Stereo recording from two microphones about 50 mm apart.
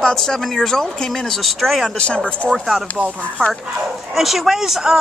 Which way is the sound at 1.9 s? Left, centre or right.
Left.